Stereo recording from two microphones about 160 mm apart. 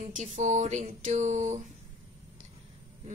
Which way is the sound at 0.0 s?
45° right (ahead or behind).